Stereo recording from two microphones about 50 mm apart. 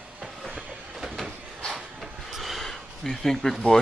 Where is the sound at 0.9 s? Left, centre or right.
Centre.